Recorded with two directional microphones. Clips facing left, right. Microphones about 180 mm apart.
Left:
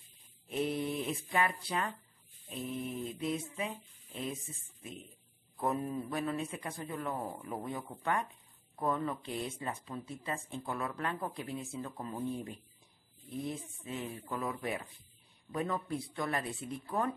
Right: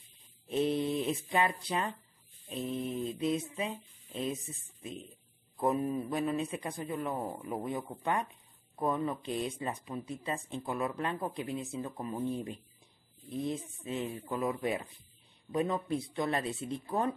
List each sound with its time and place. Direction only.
0.5 s a sound: 25° right (ahead or behind)
2.7 s speech: 20° right (ahead or behind)
5.6 s a man's voice: 15° right (ahead or behind)